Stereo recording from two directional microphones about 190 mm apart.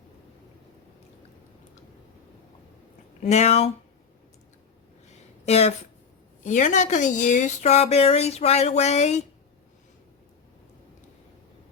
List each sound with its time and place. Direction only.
3.2 s a woman's voice: 35° left (ahead or behind)
5.5 s a woman's voice: 35° left (ahead or behind)